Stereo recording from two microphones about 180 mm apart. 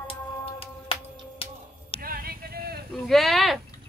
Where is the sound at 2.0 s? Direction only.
55° right (ahead or behind).